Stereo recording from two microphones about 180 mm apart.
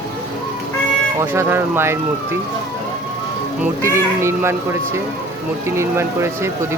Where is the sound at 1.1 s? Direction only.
15° right (ahead or behind).